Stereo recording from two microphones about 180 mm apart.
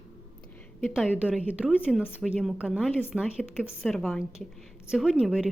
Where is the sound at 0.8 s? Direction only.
Centre (ahead or behind).